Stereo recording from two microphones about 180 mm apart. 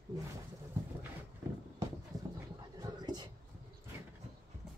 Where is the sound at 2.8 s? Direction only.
20° right (ahead or behind).